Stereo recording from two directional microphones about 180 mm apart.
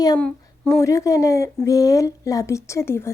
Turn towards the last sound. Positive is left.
turn(degrees=15)  # may be behind; listen again after turning